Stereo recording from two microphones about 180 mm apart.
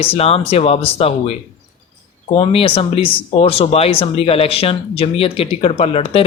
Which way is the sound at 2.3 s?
30° left (ahead or behind).